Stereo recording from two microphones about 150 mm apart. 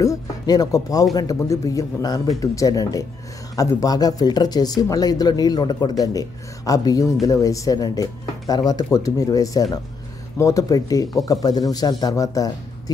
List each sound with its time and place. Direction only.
0.0 s speech: 25° left (ahead or behind)